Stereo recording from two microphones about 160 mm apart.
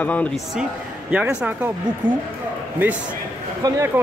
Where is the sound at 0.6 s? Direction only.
5° right (ahead or behind).